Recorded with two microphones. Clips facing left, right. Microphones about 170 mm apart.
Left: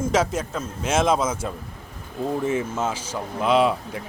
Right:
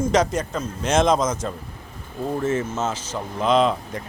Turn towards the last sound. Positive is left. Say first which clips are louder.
# even
turn(degrees=10)  # may be behind; listen again after turning